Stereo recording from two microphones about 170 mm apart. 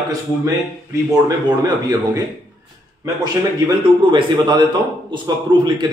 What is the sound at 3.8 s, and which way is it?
A man's voice, 25° right (ahead or behind).